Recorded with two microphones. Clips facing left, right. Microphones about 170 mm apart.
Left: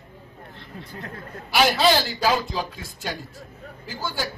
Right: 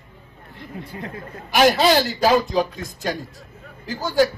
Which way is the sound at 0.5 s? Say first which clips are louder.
Right 6 dB; 10° right (ahead or behind).